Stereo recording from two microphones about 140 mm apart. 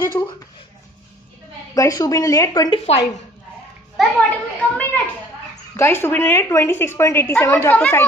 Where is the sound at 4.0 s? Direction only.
10° left (ahead or behind).